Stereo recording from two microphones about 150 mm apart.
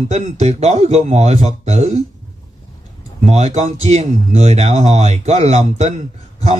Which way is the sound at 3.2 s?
50° right (ahead or behind).